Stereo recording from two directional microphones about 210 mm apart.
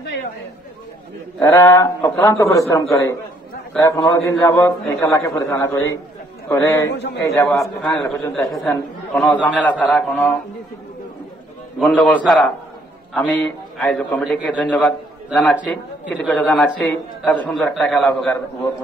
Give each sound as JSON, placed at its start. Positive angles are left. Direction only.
{"t": 1.4, "sound": "a man's voice", "side_deg": 10}
{"t": 6.9, "sound": "a man's voice", "side_deg": 55}
{"t": 7.3, "sound": "a man's voice", "side_deg": 15}
{"t": 8.4, "sound": "a man's voice", "side_deg": 0}
{"t": 11.8, "sound": "a man's voice", "side_deg": 5}